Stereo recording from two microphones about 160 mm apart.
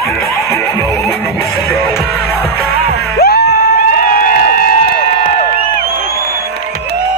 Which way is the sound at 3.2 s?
75° left (ahead or behind).